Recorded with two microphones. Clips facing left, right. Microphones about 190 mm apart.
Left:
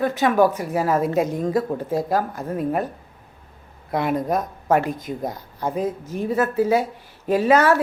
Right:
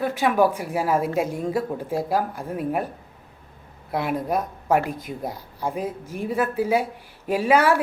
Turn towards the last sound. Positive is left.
turn(degrees=-10)  # may be behind; listen again after turning